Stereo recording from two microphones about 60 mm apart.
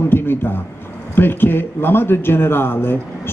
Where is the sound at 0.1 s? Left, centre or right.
Left.